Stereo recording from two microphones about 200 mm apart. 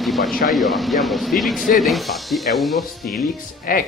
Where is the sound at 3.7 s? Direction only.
45° left (ahead or behind).